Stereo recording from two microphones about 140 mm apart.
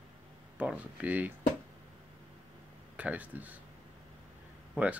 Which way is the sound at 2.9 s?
10° right (ahead or behind).